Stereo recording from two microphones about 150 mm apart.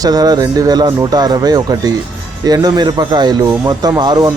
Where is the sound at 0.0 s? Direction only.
25° right (ahead or behind).